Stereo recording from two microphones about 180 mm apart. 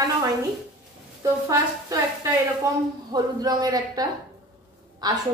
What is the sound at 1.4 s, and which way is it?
A woman's voice, 15° right (ahead or behind).